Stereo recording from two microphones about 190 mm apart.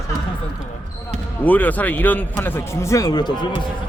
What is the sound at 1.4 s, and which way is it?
A man's voice, 10° left (ahead or behind).